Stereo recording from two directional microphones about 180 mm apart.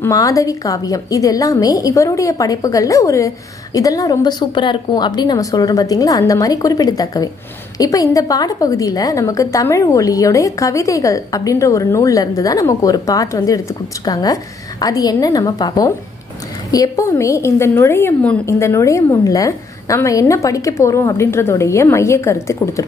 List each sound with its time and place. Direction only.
0.0 s a woman's voice: 20° left (ahead or behind)